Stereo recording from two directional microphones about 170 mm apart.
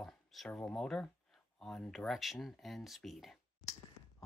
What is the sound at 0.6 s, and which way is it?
Speech, 5° left (ahead or behind).